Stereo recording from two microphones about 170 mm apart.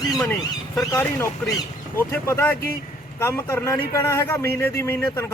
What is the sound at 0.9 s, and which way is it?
A man's voice, 20° left (ahead or behind).